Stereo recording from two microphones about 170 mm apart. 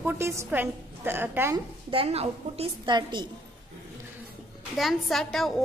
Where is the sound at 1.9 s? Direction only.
35° right (ahead or behind).